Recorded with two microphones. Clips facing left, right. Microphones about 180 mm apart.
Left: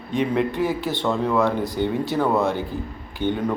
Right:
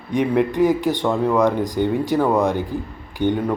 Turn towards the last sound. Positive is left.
turn(degrees=-15)  # may be behind; listen again after turning